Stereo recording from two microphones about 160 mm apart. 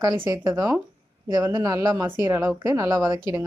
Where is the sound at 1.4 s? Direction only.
15° right (ahead or behind).